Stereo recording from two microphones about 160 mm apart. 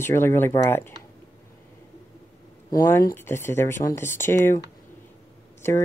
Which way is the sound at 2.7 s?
20° left (ahead or behind).